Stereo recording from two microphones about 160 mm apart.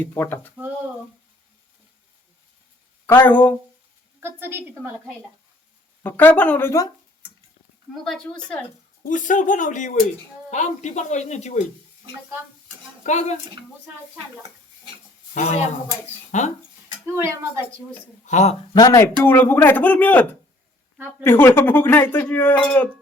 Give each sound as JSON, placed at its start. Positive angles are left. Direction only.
{"t": 0.0, "sound": "speech", "side_deg": 10}
{"t": 3.1, "sound": "speech", "side_deg": 10}
{"t": 4.2, "sound": "a woman's voice", "side_deg": -15}
{"t": 6.0, "sound": "speech", "side_deg": 10}
{"t": 8.0, "sound": "a woman's voice", "side_deg": 5}
{"t": 9.0, "sound": "speech", "side_deg": 55}
{"t": 13.1, "sound": "speech", "side_deg": 45}
{"t": 15.4, "sound": "speech", "side_deg": 45}
{"t": 18.3, "sound": "speech", "side_deg": 45}
{"t": 18.7, "sound": "speech", "side_deg": 25}
{"t": 21.2, "sound": "speech", "side_deg": 15}